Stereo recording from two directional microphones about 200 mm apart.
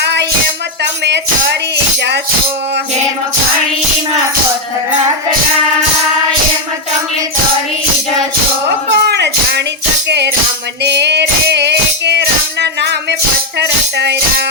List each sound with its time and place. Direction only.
0.0 s music: 60° right (ahead or behind)
1.7 s speech: 60° right (ahead or behind)
8.9 s a sound: 60° right (ahead or behind)
10.1 s music: 60° right (ahead or behind)